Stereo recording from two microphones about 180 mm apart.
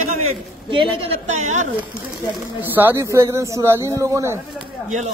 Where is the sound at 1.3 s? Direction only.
40° right (ahead or behind).